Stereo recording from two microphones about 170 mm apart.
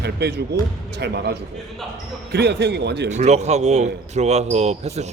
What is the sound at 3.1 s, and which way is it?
Speech, 40° right (ahead or behind).